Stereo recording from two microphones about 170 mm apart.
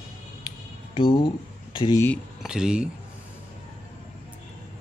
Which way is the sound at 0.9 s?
30° left (ahead or behind).